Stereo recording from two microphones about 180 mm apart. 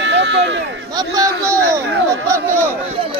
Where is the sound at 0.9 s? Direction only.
20° right (ahead or behind).